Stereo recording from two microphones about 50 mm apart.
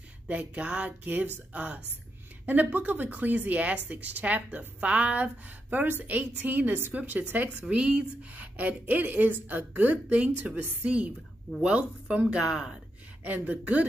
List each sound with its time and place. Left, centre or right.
0.3 s speech: right
12.4 s speech: centre
13.2 s speech: right